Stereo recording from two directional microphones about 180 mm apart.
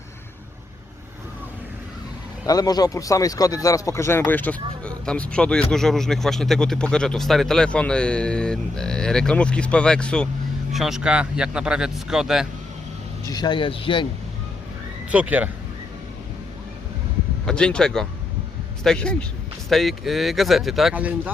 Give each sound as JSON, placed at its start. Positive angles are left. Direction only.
{"t": 2.5, "sound": "speech", "side_deg": 20}
{"t": 13.2, "sound": "speech", "side_deg": 25}
{"t": 15.1, "sound": "speech", "side_deg": -10}
{"t": 17.4, "sound": "speech", "side_deg": 5}